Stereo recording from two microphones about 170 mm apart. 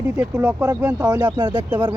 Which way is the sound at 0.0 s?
10° right (ahead or behind).